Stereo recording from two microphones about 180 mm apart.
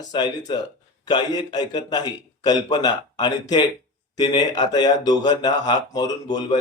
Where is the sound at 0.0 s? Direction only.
25° left (ahead or behind).